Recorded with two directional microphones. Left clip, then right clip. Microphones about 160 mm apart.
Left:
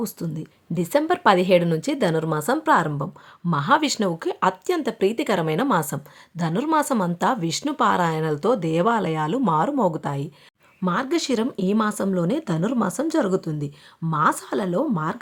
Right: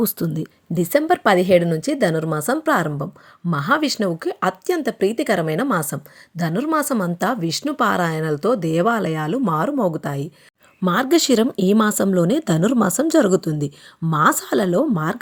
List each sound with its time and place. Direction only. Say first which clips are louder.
0.0 s speech: right 7 dB; 30° right (ahead or behind)
0.7 s speech: right 4 dB; 15° right (ahead or behind)
10.8 s speech: right 6 dB; 35° right (ahead or behind)